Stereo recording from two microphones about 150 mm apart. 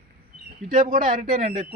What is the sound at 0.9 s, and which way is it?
Speech, 60° right (ahead or behind).